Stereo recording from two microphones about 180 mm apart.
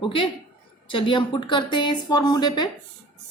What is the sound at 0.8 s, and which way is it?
A woman's voice, 30° left (ahead or behind).